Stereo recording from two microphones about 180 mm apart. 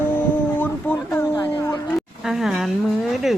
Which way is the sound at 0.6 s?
10° left (ahead or behind).